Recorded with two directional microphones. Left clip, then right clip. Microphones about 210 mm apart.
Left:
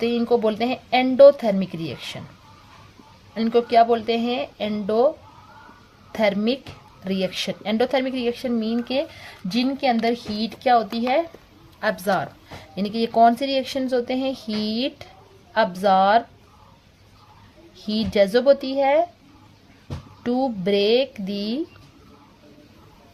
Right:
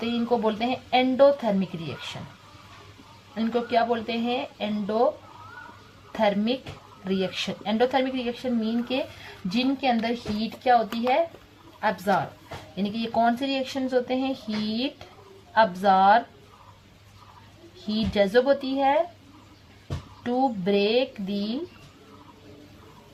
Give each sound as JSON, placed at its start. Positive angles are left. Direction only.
{"t": 0.0, "sound": "speech", "side_deg": 55}
{"t": 3.3, "sound": "speech", "side_deg": 55}
{"t": 6.1, "sound": "a woman's voice", "side_deg": 60}
{"t": 17.8, "sound": "speech", "side_deg": 55}
{"t": 20.2, "sound": "speech", "side_deg": 60}